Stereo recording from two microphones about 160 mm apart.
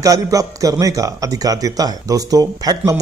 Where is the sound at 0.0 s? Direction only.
20° right (ahead or behind).